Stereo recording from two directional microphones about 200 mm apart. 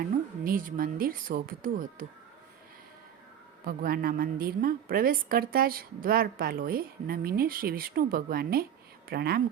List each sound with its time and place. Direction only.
0.4 s a woman's voice: 45° right (ahead or behind)
3.7 s a woman's voice: 50° right (ahead or behind)